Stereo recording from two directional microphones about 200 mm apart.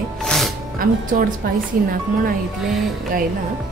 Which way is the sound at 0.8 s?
45° right (ahead or behind).